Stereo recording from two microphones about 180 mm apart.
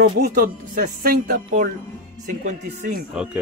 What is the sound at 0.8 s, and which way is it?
Speech, 60° right (ahead or behind).